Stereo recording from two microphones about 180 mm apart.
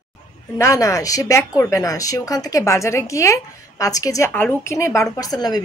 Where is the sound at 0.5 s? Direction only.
15° left (ahead or behind).